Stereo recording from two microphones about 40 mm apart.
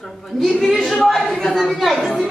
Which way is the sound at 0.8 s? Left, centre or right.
Centre.